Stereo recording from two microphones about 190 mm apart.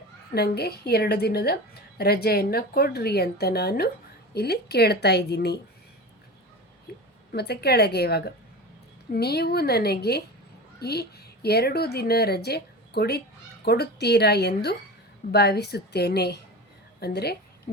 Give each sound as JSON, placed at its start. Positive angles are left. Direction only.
{"t": 0.3, "sound": "a woman's voice", "side_deg": 55}
{"t": 6.9, "sound": "a sound", "side_deg": 55}
{"t": 7.3, "sound": "a woman's voice", "side_deg": 60}